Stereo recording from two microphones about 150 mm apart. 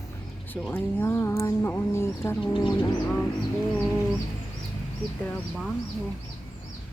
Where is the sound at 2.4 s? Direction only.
35° left (ahead or behind).